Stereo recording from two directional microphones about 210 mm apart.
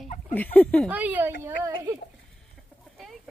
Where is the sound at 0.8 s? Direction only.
10° right (ahead or behind).